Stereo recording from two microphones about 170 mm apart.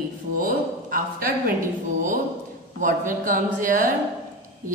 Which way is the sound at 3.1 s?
50° right (ahead or behind).